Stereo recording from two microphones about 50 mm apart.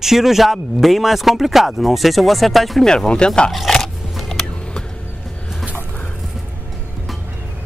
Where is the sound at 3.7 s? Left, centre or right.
Centre.